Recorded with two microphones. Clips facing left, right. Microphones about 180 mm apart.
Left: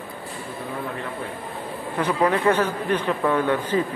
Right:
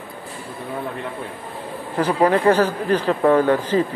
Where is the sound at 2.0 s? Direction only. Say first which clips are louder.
Right 4 dB; 30° right (ahead or behind).